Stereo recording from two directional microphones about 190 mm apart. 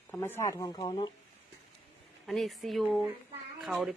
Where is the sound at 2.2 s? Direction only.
Centre (ahead or behind).